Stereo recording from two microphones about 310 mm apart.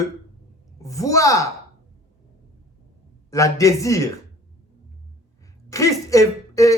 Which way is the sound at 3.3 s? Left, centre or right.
Centre.